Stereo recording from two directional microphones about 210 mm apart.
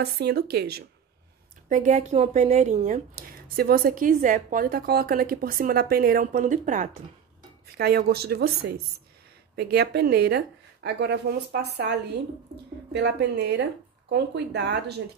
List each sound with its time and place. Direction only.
0.0 s a woman's voice: 50° right (ahead or behind)
1.7 s a woman's voice: 35° right (ahead or behind)
3.5 s a woman's voice: 45° right (ahead or behind)
7.7 s a woman's voice: 45° right (ahead or behind)